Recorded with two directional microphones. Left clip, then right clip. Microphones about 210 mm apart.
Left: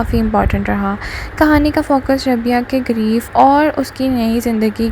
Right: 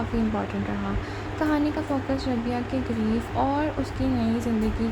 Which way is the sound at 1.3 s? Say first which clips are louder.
Left 13 dB; 35° left (ahead or behind).